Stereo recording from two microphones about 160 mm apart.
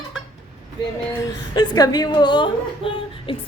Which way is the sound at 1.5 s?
25° left (ahead or behind).